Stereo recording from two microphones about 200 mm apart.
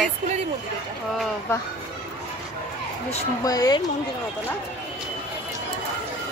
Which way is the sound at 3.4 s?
20° left (ahead or behind).